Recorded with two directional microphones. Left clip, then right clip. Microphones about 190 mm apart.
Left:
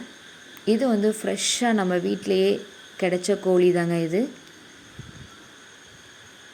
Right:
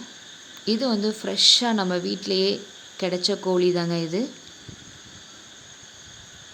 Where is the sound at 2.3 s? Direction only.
35° left (ahead or behind).